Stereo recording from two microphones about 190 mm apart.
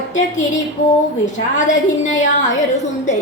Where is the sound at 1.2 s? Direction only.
40° left (ahead or behind).